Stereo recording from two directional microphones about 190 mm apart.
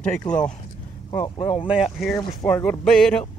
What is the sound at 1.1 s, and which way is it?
Speech, 25° left (ahead or behind).